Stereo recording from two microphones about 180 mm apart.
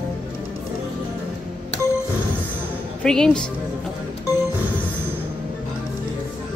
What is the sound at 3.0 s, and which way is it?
Speech, 5° left (ahead or behind).